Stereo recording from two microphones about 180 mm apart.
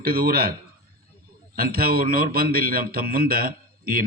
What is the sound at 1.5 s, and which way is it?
A man's voice, 55° right (ahead or behind).